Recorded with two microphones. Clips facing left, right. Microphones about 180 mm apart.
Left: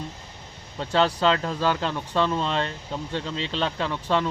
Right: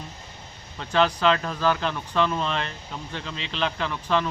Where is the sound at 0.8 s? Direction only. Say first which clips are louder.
Even; 30° left (ahead or behind).